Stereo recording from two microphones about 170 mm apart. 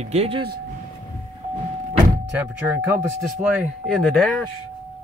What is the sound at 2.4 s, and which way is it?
Speech, 10° right (ahead or behind).